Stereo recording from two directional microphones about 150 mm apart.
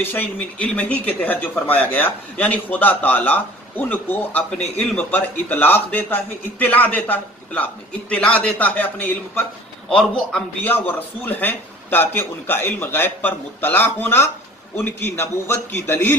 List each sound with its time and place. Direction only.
0.0 s speech: 10° left (ahead or behind)